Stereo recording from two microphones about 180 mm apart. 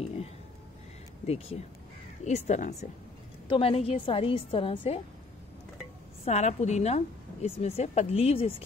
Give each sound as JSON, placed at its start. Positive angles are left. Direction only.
{"t": 1.2, "sound": "a woman's voice", "side_deg": 35}
{"t": 6.2, "sound": "a woman's voice", "side_deg": 40}